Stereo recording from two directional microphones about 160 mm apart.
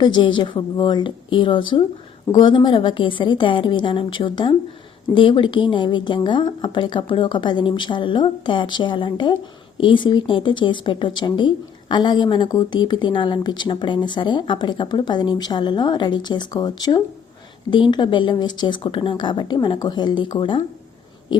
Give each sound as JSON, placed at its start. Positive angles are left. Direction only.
{"t": 0.0, "sound": "a woman's voice", "side_deg": 30}